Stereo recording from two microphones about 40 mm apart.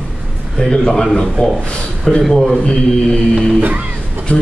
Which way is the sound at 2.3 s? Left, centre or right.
Centre.